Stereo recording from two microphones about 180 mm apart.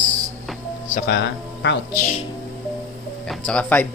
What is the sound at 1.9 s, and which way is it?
Speech, 45° left (ahead or behind).